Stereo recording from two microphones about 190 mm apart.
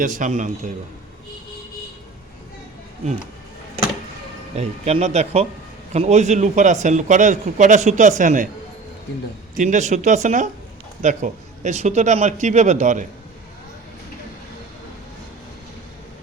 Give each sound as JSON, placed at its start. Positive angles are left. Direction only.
{"t": 0.0, "sound": "a man's voice", "side_deg": -40}
{"t": 4.5, "sound": "a man's voice", "side_deg": -35}
{"t": 9.6, "sound": "a man's voice", "side_deg": -40}